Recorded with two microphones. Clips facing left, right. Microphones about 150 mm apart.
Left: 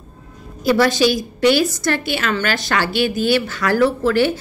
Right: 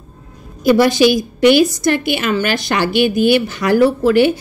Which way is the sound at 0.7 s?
15° right (ahead or behind).